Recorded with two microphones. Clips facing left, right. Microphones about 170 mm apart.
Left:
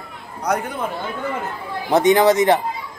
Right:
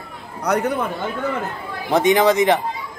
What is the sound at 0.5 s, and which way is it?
Speech, 70° right (ahead or behind).